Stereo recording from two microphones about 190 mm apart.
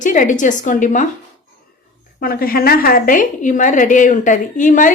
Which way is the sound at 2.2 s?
50° left (ahead or behind).